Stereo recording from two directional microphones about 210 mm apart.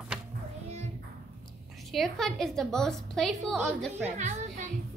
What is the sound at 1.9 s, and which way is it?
A woman's voice, centre (ahead or behind).